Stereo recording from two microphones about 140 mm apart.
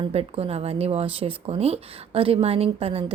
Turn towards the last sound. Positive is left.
turn(degrees=-45)  # may be behind; listen again after turning